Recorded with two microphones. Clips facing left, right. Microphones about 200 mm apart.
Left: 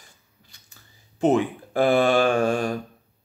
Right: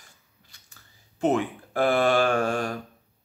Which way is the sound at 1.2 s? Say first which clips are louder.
Left 4 dB; 20° left (ahead or behind).